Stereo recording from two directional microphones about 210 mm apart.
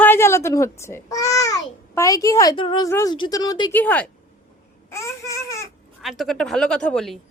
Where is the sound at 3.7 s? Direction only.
10° left (ahead or behind).